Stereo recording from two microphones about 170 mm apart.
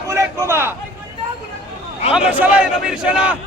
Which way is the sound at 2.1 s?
5° right (ahead or behind).